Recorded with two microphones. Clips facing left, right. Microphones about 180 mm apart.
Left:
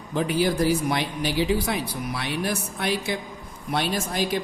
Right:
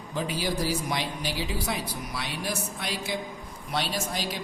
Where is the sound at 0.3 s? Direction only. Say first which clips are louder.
Left 8 dB; 55° left (ahead or behind).